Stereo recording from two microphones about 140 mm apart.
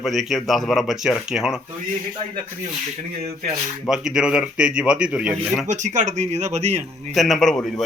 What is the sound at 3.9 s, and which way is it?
Speech, 5° right (ahead or behind).